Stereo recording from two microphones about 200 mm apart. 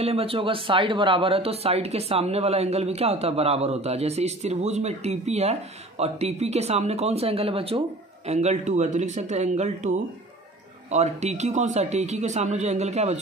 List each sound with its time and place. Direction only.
0.0 s speech: 30° right (ahead or behind)